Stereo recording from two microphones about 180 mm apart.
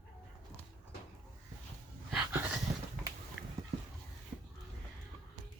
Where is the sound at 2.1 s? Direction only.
5° right (ahead or behind).